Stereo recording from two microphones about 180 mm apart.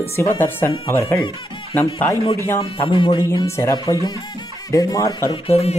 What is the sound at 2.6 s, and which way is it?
Speech, 30° left (ahead or behind).